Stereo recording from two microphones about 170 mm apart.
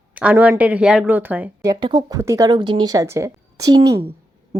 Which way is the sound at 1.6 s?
25° right (ahead or behind).